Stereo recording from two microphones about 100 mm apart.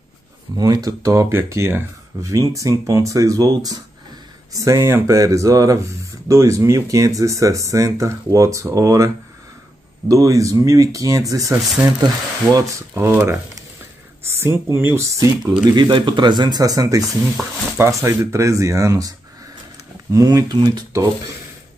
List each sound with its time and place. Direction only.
0.6 s speech: 40° right (ahead or behind)
15.6 s speech: 50° right (ahead or behind)
17.4 s speech: 25° right (ahead or behind); by 20.8 s 45° right (ahead or behind)